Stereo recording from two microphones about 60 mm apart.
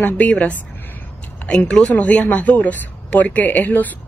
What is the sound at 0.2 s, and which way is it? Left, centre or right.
Speech, left.